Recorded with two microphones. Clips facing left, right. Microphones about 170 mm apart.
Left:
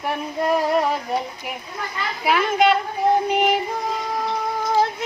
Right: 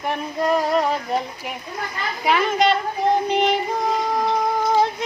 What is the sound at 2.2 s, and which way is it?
Speech, 5° left (ahead or behind).